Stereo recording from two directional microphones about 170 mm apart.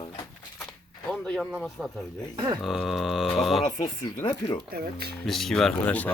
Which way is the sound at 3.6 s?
25° left (ahead or behind).